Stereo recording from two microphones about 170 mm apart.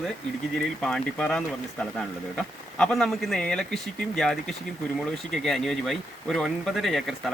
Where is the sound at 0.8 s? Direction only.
5° left (ahead or behind).